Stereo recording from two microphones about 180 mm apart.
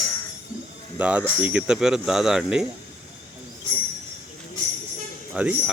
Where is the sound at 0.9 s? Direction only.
5° right (ahead or behind).